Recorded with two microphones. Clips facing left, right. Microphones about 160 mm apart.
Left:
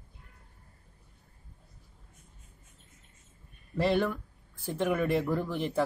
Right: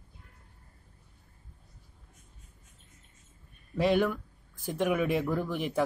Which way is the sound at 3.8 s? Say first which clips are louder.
Right 1 dB; 10° right (ahead or behind).